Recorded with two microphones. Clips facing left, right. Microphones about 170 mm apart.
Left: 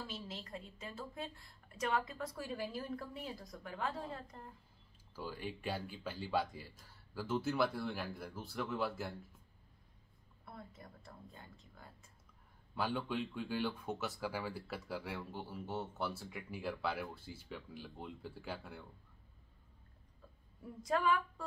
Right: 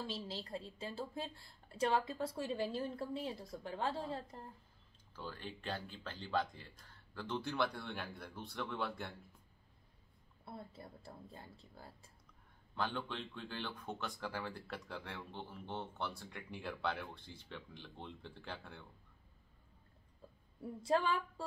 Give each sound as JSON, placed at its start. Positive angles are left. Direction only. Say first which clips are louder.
{"t": 0.0, "sound": "a woman's voice", "louder": "right 3 dB", "side_deg": -30}
{"t": 5.1, "sound": "speech", "louder": "left 3 dB", "side_deg": 10}
{"t": 10.4, "sound": "speech", "louder": "right 2 dB", "side_deg": -30}
{"t": 12.7, "sound": "speech", "louder": "left 3 dB", "side_deg": 10}
{"t": 20.8, "sound": "a woman's voice", "louder": "left 1 dB", "side_deg": -30}